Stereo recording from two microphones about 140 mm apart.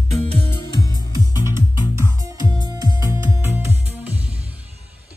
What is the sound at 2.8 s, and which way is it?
Music, 25° right (ahead or behind).